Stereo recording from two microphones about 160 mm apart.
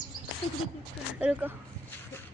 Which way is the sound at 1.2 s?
10° right (ahead or behind).